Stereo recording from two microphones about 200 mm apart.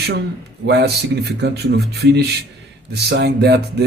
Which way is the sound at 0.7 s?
55° right (ahead or behind).